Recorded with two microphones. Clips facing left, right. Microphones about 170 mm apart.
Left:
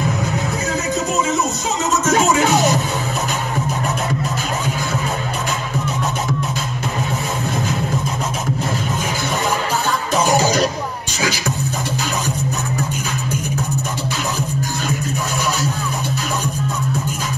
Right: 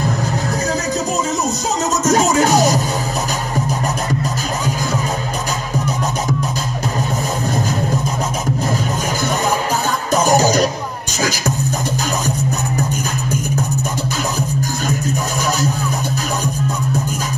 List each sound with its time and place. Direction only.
2.0 s music: 40° right (ahead or behind)
10.1 s music: 40° right (ahead or behind)